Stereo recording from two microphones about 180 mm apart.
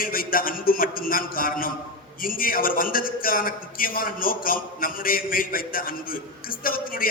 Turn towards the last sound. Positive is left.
turn(degrees=50)  # may be behind; listen again after turning